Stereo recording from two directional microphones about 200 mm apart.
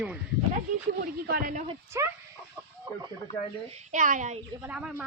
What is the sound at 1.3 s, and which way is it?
Speech, 45° right (ahead or behind).